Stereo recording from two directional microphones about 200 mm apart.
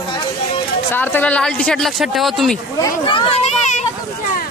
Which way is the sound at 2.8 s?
25° left (ahead or behind).